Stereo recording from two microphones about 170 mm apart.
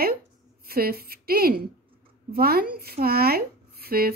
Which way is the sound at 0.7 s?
60° right (ahead or behind).